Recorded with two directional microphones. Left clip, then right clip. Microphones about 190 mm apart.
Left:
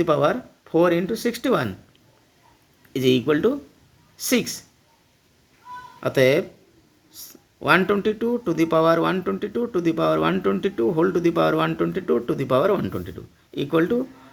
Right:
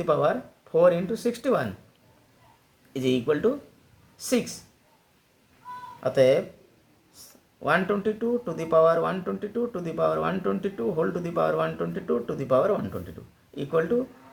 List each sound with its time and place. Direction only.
0.0 s speech: 50° left (ahead or behind)
2.9 s speech: 50° left (ahead or behind)
6.0 s speech: 55° left (ahead or behind)